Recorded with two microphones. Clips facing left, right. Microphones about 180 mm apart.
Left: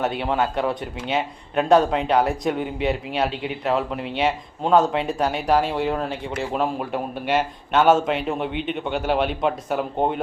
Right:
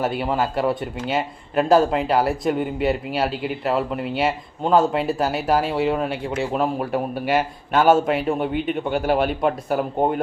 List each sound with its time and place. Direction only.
0.0 s speech: 5° right (ahead or behind)